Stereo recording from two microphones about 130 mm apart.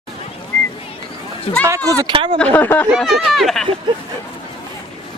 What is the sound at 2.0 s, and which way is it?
Speech, 40° right (ahead or behind).